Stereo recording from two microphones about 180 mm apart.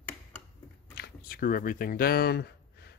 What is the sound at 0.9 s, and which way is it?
Speech, 60° left (ahead or behind).